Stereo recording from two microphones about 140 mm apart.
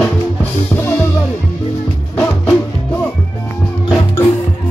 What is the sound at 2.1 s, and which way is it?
Music, 15° left (ahead or behind).